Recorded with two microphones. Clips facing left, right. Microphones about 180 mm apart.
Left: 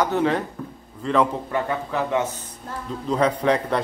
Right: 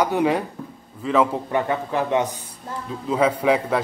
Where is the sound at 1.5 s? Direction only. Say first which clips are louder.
Right 3 dB; 20° right (ahead or behind).